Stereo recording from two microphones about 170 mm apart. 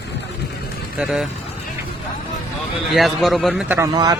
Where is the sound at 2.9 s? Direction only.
Centre (ahead or behind).